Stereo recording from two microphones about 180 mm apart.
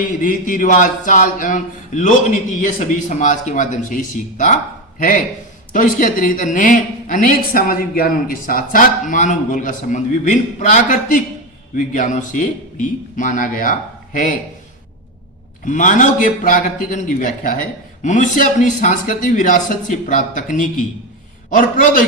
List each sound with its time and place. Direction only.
0.2 s a woman's voice: 50° left (ahead or behind)
15.6 s a woman's voice: 45° left (ahead or behind)